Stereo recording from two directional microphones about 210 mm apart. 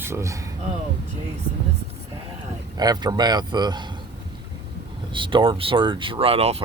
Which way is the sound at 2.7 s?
20° right (ahead or behind).